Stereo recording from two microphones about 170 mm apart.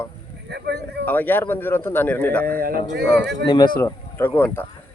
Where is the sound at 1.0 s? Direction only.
10° left (ahead or behind).